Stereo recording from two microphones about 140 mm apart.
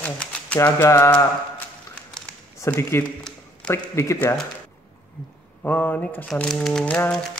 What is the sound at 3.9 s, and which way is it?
Speech, 20° left (ahead or behind).